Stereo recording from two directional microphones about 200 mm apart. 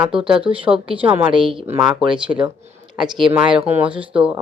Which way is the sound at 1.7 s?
Centre (ahead or behind).